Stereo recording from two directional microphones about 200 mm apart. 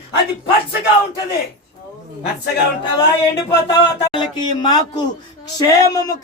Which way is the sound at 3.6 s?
25° left (ahead or behind).